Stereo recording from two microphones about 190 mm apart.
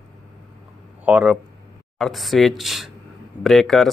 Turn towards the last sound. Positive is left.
turn(degrees=0)  # may be behind; listen again after turning